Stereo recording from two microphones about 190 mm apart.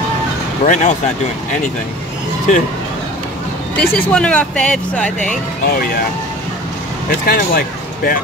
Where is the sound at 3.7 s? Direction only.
5° left (ahead or behind).